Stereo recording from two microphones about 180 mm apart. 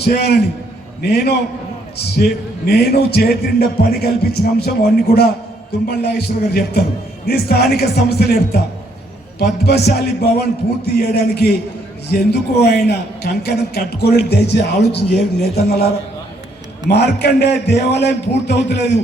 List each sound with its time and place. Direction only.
0.0 s a man's voice: 65° left (ahead or behind)
9.6 s a man's voice: 65° left (ahead or behind)
16.9 s a man's voice: 65° left (ahead or behind)